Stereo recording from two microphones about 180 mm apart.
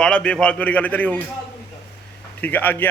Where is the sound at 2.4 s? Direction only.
10° left (ahead or behind).